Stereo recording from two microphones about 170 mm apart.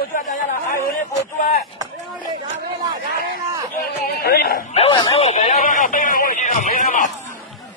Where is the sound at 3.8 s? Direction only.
70° left (ahead or behind).